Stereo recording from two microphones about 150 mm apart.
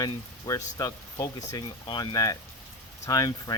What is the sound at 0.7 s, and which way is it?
Speech, 25° left (ahead or behind).